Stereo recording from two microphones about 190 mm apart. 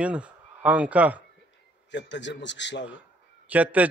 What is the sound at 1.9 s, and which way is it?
Speech, 70° left (ahead or behind).